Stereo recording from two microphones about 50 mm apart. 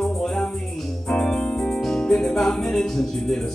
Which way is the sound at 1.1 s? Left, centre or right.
Centre.